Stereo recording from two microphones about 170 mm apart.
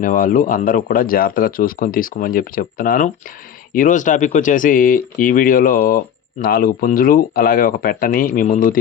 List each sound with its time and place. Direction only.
0.0 s speech: 55° left (ahead or behind)